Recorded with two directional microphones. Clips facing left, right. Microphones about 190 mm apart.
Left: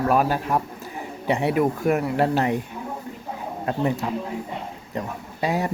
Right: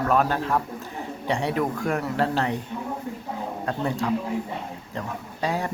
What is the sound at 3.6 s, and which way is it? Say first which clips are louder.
Speech: left 3 dB; 15° left (ahead or behind).